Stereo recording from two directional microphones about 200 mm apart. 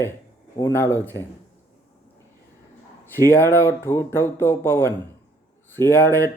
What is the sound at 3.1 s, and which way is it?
Speech, 10° left (ahead or behind).